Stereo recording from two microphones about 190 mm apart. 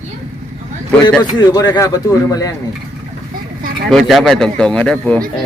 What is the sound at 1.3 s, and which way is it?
Speech, 20° left (ahead or behind).